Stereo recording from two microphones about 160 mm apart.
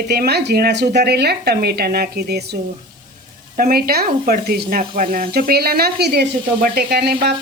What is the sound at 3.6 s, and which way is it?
Speech, 70° right (ahead or behind).